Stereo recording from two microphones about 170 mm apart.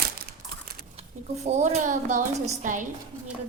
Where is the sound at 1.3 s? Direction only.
40° right (ahead or behind).